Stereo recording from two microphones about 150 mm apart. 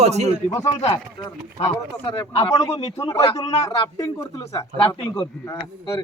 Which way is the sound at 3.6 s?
20° left (ahead or behind).